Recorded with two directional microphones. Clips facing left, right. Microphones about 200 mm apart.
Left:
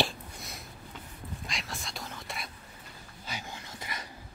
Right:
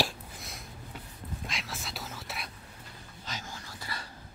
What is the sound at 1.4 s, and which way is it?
Whispering, centre (ahead or behind).